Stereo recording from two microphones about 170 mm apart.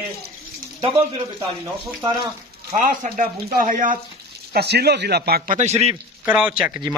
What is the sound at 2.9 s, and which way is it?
Speech, 55° right (ahead or behind).